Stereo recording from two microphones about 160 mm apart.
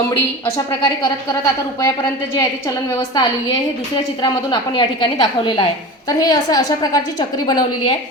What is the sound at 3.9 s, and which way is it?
A woman's voice, 30° left (ahead or behind).